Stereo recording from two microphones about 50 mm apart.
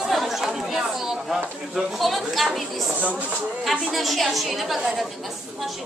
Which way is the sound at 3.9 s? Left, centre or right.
Centre.